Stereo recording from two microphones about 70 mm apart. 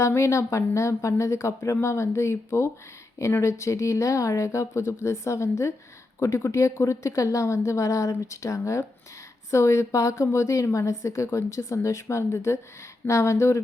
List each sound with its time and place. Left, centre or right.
0.0 s a woman's voice: left